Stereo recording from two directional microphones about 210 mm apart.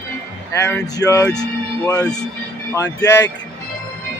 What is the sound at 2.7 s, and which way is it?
Speech, 15° left (ahead or behind).